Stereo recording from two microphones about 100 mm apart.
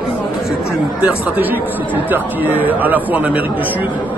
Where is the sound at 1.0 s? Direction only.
20° right (ahead or behind).